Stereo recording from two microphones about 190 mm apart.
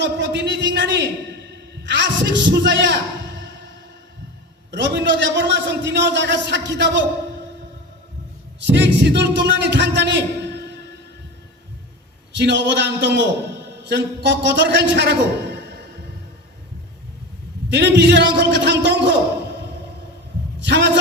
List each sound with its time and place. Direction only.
0.0 s a man's voice: 65° right (ahead or behind)
4.7 s a man's voice: 70° right (ahead or behind)
8.6 s a man's voice: 65° right (ahead or behind)
12.4 s a man's voice: 65° right (ahead or behind)
17.7 s a man's voice: 65° right (ahead or behind)
20.7 s a man's voice: 65° right (ahead or behind)